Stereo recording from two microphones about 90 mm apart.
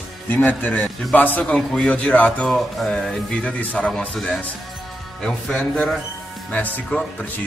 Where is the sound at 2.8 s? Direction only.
5° left (ahead or behind).